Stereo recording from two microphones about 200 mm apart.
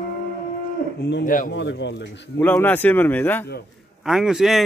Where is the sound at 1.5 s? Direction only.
60° left (ahead or behind).